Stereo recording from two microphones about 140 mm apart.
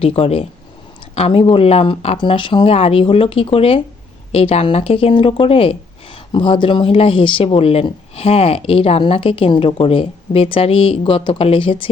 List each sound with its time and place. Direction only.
0.0 s speech: 45° left (ahead or behind)